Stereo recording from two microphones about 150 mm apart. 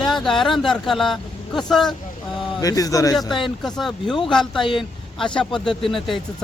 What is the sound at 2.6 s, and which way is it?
Speech, 25° left (ahead or behind).